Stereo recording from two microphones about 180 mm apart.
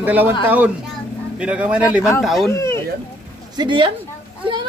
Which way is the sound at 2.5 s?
15° left (ahead or behind).